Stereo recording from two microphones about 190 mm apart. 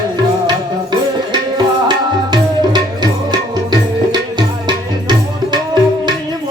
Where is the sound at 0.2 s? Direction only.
20° right (ahead or behind).